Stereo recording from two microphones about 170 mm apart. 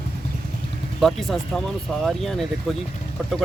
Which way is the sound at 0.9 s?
Centre (ahead or behind).